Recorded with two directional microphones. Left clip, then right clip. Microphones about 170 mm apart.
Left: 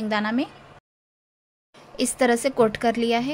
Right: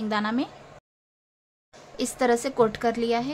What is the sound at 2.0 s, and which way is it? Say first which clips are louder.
A woman's voice: left 3 dB; 20° left (ahead or behind).